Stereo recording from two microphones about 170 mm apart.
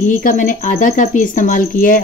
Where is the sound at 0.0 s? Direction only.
50° left (ahead or behind).